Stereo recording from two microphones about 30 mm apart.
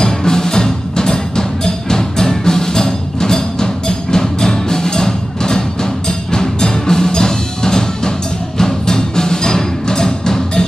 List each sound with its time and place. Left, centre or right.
0.0 s music: centre